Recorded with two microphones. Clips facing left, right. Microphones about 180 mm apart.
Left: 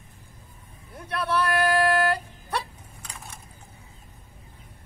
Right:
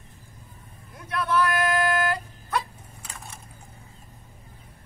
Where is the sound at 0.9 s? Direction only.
35° left (ahead or behind).